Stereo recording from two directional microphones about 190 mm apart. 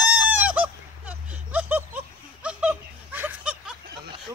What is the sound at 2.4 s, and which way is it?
Laughter, 5° right (ahead or behind).